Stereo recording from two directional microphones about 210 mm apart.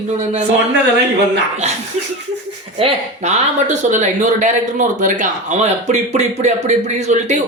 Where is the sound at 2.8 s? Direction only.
30° right (ahead or behind).